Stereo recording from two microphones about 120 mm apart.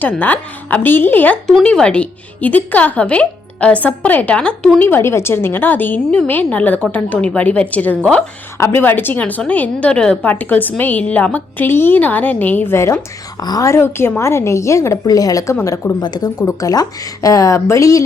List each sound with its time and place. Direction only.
0.0 s a woman's voice: 15° left (ahead or behind)
4.8 s a woman's voice: 20° left (ahead or behind)
16.0 s a woman's voice: 35° left (ahead or behind)